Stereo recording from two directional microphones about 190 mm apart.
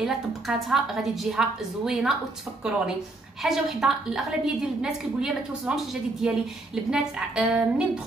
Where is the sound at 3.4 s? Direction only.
Centre (ahead or behind).